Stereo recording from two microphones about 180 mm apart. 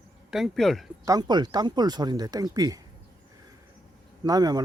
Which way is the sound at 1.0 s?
20° right (ahead or behind).